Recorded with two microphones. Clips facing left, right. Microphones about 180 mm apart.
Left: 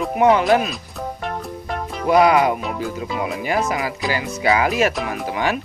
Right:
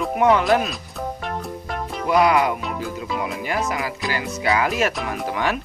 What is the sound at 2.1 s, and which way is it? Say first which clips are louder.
Speech: left 3 dB; 25° left (ahead or behind).